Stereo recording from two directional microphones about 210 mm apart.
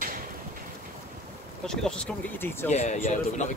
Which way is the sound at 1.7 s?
5° left (ahead or behind).